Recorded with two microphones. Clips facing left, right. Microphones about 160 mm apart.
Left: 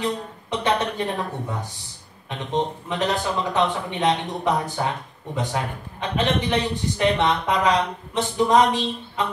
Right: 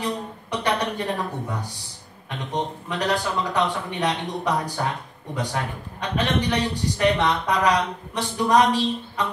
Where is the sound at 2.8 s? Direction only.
20° left (ahead or behind).